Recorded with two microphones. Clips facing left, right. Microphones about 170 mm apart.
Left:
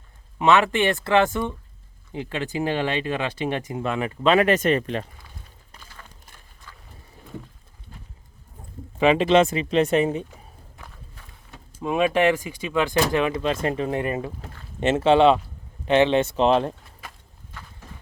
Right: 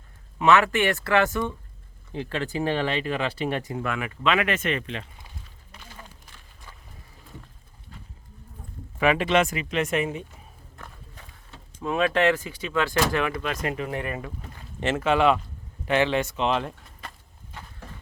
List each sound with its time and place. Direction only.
0.3 s speech: 20° left (ahead or behind); by 5.0 s 40° left (ahead or behind)
9.0 s speech: 25° left (ahead or behind)
11.8 s speech: 15° left (ahead or behind); by 16.7 s 35° left (ahead or behind)